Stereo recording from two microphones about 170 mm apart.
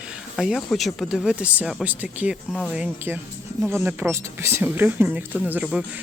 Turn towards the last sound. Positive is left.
turn(degrees=-5)  # may be behind; listen again after turning